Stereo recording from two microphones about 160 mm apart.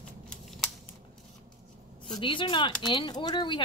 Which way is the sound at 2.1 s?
30° left (ahead or behind).